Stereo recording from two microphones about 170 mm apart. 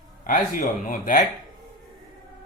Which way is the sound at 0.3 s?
50° left (ahead or behind).